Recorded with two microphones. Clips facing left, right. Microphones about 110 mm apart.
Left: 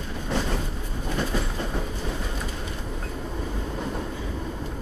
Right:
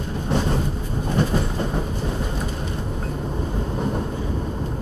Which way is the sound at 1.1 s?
30° right (ahead or behind).